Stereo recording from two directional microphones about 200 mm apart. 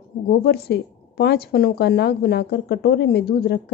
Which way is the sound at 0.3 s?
50° left (ahead or behind).